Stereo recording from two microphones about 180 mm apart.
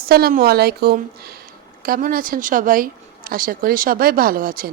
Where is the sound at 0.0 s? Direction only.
60° right (ahead or behind).